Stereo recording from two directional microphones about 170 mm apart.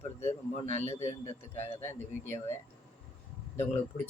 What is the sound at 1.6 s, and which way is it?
Speech, 15° left (ahead or behind).